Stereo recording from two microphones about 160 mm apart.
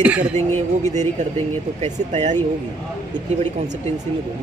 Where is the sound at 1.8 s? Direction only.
45° right (ahead or behind).